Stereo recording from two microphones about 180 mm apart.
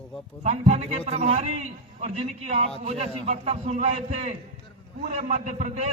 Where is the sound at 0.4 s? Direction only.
40° right (ahead or behind).